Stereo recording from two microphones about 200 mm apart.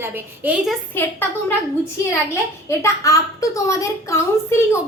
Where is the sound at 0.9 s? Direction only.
10° left (ahead or behind).